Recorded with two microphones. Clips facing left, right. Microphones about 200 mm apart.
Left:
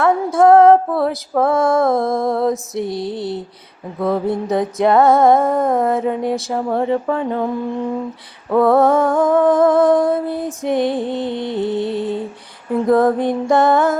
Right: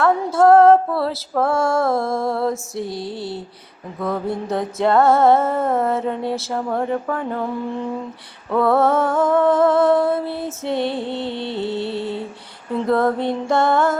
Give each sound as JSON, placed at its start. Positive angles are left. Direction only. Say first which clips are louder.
{"t": 0.3, "sound": "music", "louder": "left 2 dB", "side_deg": 15}
{"t": 8.4, "sound": "music", "louder": "left 4 dB", "side_deg": 20}